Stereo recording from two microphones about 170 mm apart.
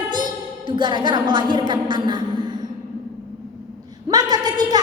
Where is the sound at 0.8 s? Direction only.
25° right (ahead or behind).